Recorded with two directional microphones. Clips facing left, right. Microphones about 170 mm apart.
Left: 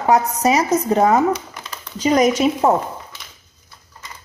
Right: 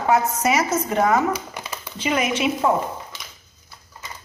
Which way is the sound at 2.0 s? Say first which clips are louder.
Left 7 dB; 40° left (ahead or behind).